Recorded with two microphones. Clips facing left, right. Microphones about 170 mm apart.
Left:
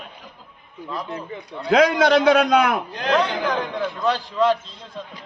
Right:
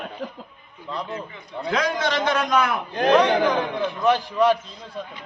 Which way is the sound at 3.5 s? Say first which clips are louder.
Right 1 dB; 15° right (ahead or behind).